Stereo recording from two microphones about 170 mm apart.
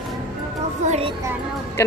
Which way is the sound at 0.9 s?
35° right (ahead or behind).